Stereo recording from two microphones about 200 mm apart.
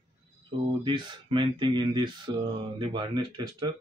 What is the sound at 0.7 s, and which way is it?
Speech, 25° right (ahead or behind).